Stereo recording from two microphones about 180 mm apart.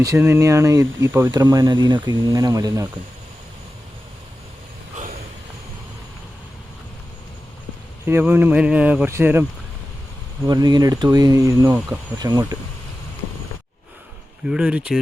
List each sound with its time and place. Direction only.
0.0 s speech: 15° right (ahead or behind)
8.0 s speech: 10° right (ahead or behind)
10.4 s speech: 20° right (ahead or behind)
14.4 s speech: 5° right (ahead or behind)